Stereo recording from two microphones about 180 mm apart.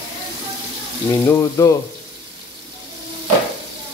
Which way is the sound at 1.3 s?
15° left (ahead or behind).